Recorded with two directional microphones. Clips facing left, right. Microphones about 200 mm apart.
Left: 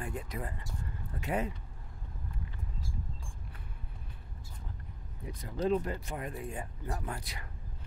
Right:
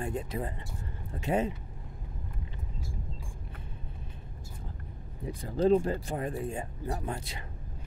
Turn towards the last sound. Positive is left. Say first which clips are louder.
# right 4 dB
turn(degrees=-25)  # may be behind; listen again after turning